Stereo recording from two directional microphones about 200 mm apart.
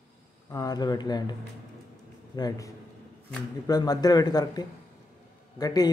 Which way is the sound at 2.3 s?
20° left (ahead or behind).